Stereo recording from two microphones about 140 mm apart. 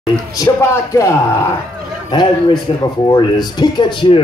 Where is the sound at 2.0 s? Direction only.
30° left (ahead or behind).